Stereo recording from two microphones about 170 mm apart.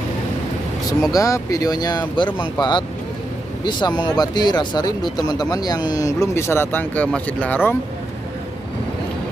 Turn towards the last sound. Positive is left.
turn(degrees=10)  # may be behind; listen again after turning